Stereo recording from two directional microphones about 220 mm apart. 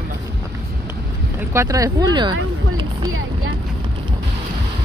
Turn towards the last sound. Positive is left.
turn(degrees=-20)  # may be behind; listen again after turning